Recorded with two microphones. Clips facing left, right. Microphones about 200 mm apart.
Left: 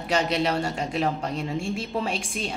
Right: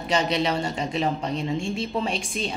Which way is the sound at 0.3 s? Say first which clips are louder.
Even; 5° left (ahead or behind).